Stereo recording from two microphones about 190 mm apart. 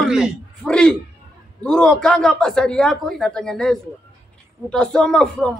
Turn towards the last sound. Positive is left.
turn(degrees=5)  # may be behind; listen again after turning